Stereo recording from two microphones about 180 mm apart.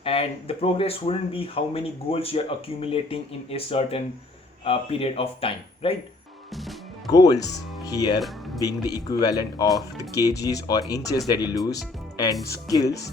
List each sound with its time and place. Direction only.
0.0 s speech: 30° left (ahead or behind)
7.1 s speech: 20° left (ahead or behind)